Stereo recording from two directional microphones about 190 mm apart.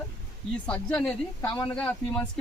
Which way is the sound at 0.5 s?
5° left (ahead or behind).